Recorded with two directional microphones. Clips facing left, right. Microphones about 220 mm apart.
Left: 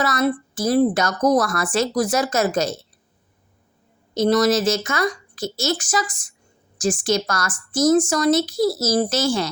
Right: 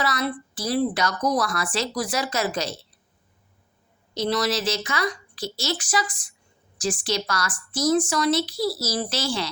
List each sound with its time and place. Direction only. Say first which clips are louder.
0.0 s speech: left 6 dB; 45° left (ahead or behind)
4.1 s speech: left 7 dB; 45° left (ahead or behind)